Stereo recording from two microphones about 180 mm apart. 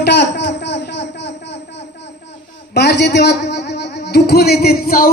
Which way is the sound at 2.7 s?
70° left (ahead or behind).